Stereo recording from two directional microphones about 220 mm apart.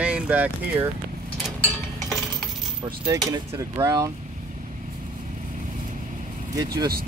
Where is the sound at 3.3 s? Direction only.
15° right (ahead or behind).